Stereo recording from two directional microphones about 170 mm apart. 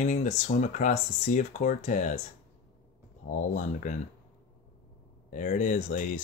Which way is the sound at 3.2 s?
50° left (ahead or behind).